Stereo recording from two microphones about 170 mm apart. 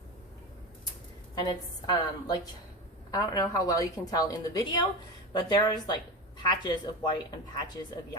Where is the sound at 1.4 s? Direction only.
25° left (ahead or behind).